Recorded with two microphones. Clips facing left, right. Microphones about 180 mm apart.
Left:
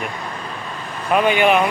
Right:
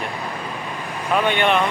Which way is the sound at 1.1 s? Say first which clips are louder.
Left 3 dB; 10° left (ahead or behind).